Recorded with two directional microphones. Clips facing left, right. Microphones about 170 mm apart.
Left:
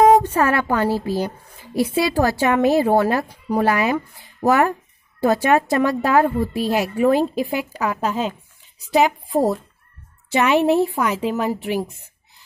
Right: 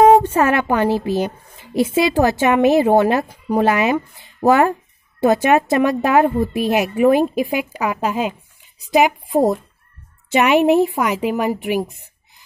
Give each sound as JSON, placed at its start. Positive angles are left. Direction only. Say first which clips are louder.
{"t": 0.0, "sound": "a woman's voice", "louder": "right 2 dB", "side_deg": -25}